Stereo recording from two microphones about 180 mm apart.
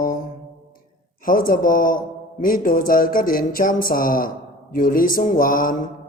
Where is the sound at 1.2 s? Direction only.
50° left (ahead or behind).